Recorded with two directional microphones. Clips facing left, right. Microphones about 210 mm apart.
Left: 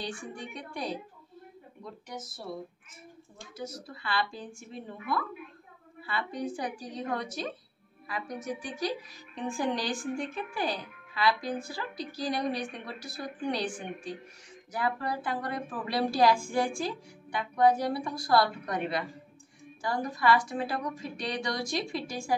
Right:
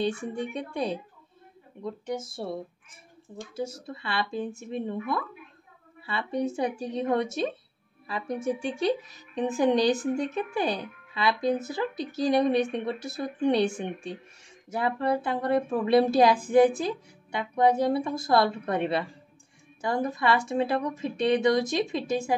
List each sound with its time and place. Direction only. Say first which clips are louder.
0.0 s a woman's voice: right 9 dB; 25° right (ahead or behind)
3.5 s a woman's voice: right 6 dB; 25° right (ahead or behind)